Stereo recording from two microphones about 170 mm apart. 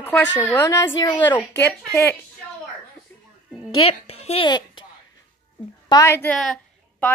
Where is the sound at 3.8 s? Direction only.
35° left (ahead or behind).